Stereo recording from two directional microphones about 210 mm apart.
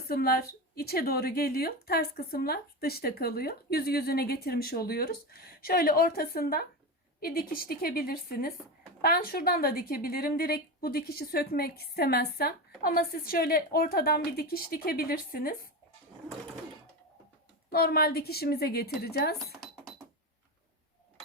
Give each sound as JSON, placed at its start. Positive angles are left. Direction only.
{"t": 0.1, "sound": "a woman's voice", "side_deg": 45}
{"t": 17.7, "sound": "a woman's voice", "side_deg": 45}